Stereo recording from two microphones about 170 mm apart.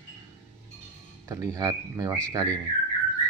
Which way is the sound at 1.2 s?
20° right (ahead or behind).